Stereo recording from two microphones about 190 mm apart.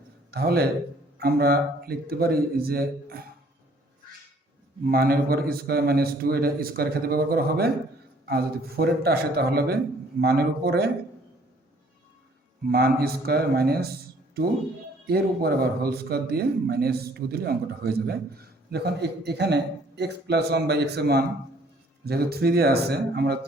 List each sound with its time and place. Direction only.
0.3 s a man's voice: 55° right (ahead or behind)
4.9 s a man's voice: 50° right (ahead or behind)
12.6 s a man's voice: 55° right (ahead or behind)